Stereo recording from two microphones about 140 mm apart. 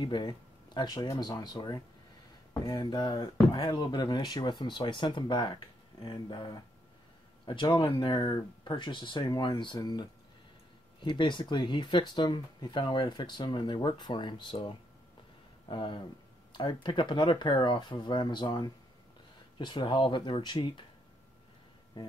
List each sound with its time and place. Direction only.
0.0 s speech: 35° left (ahead or behind)